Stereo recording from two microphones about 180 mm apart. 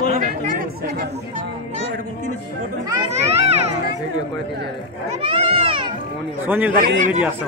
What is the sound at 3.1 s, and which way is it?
Speech, 35° right (ahead or behind).